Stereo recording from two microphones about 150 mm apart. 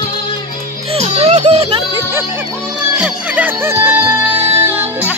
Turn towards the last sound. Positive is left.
turn(degrees=-15)  # may be behind; listen again after turning